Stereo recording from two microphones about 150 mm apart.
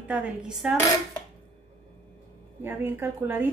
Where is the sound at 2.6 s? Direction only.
15° right (ahead or behind).